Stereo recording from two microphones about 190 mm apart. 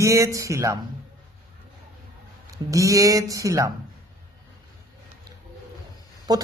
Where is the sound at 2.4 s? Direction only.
15° right (ahead or behind).